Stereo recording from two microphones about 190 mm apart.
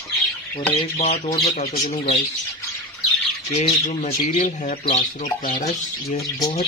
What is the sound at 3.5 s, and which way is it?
Speech, 35° left (ahead or behind).